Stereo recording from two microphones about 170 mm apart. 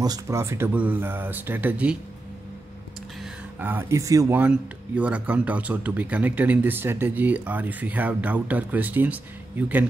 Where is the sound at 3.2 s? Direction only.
10° right (ahead or behind).